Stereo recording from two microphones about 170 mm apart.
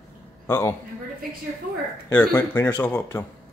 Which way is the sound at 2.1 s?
10° left (ahead or behind).